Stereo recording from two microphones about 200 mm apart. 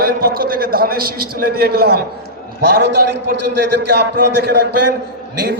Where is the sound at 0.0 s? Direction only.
45° right (ahead or behind).